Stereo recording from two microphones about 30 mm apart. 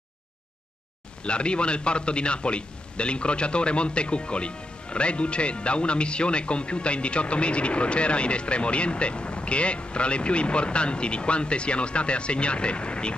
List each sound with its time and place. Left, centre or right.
1.2 s a man's voice: left